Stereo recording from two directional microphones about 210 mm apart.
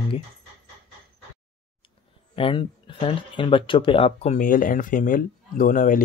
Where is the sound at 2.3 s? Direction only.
25° left (ahead or behind).